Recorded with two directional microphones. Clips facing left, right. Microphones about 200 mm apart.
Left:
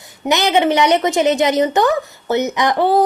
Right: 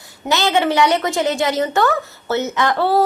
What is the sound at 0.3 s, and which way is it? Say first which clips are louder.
A woman's voice: left 2 dB; 20° left (ahead or behind).